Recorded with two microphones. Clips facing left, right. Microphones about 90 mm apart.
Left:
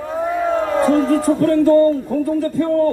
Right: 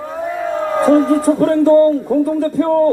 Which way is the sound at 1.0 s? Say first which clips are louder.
Right 2 dB; 20° right (ahead or behind).